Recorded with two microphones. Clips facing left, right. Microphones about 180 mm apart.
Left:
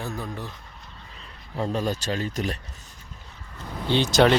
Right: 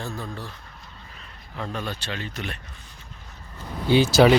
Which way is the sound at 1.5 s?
35° left (ahead or behind).